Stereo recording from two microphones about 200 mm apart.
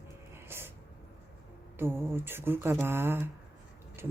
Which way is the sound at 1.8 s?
10° right (ahead or behind).